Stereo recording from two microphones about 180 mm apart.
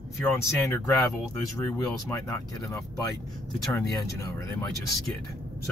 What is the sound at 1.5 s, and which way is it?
Speech, 15° left (ahead or behind).